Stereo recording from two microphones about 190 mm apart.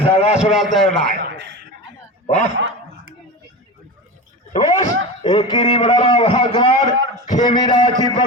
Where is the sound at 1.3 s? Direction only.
70° right (ahead or behind).